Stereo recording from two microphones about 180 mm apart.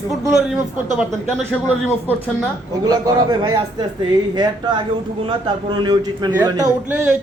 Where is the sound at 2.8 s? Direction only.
20° right (ahead or behind).